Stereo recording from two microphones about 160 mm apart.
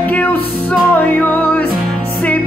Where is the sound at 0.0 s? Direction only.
10° left (ahead or behind).